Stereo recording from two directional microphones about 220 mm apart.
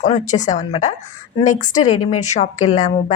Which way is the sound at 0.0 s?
30° left (ahead or behind).